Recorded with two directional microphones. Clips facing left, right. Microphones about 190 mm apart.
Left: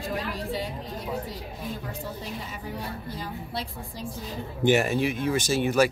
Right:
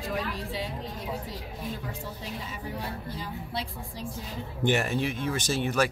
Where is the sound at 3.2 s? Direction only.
45° left (ahead or behind).